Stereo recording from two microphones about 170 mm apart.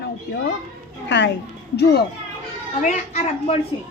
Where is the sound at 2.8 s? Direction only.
45° left (ahead or behind).